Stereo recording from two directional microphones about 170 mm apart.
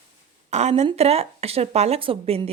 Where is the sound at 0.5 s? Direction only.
40° right (ahead or behind).